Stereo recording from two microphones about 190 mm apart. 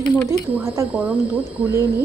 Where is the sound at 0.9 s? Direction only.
10° right (ahead or behind).